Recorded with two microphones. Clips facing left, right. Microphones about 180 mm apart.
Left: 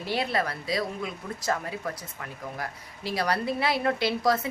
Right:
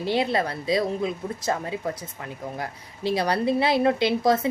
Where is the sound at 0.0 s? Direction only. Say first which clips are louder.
Right 4 dB; 20° right (ahead or behind).